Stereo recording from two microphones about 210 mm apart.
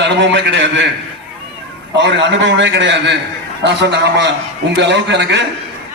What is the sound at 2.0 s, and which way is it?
A man's voice, 60° right (ahead or behind).